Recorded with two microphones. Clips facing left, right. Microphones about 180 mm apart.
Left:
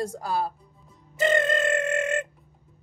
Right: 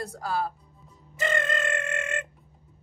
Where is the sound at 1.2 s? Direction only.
30° left (ahead or behind).